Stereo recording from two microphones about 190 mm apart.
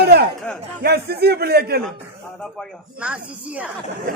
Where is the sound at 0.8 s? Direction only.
55° right (ahead or behind).